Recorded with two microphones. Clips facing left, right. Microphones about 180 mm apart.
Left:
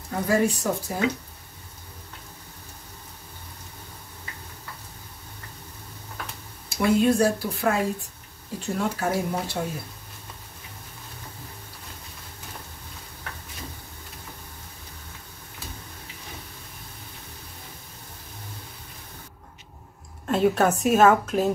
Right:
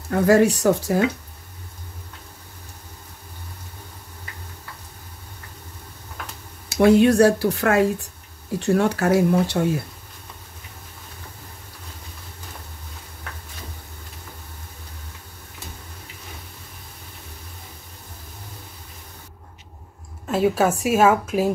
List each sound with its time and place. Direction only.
0.1 s speech: 80° right
6.7 s speech: 80° right
20.2 s a woman's voice: 5° right (ahead or behind)